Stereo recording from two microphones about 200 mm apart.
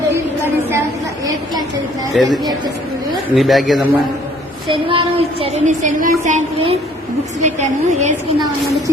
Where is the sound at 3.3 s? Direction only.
Centre (ahead or behind).